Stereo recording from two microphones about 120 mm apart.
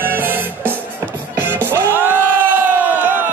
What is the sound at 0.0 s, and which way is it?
Music, 15° right (ahead or behind).